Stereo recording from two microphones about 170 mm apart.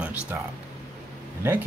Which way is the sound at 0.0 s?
10° right (ahead or behind).